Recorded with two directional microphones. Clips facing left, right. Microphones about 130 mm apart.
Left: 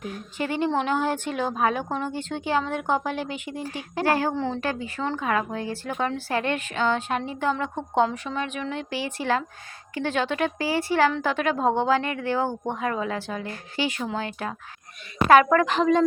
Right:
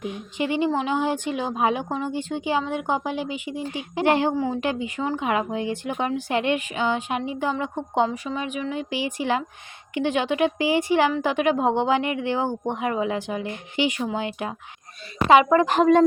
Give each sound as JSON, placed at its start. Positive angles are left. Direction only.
{"t": 0.0, "sound": "a woman's voice", "side_deg": -15}
{"t": 4.4, "sound": "speech", "side_deg": -10}
{"t": 15.6, "sound": "speech", "side_deg": -45}